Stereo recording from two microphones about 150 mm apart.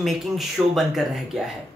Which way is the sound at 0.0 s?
Centre (ahead or behind).